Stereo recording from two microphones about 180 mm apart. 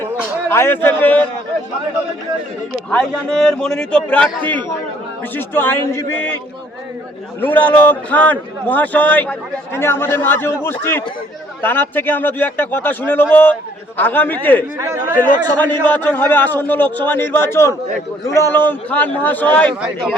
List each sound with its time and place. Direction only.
0.4 s a man's voice: 10° left (ahead or behind)
2.9 s a man's voice: 5° left (ahead or behind)
7.4 s a man's voice: 10° left (ahead or behind)
14.8 s speech: 15° right (ahead or behind)
15.2 s a man's voice: 10° left (ahead or behind)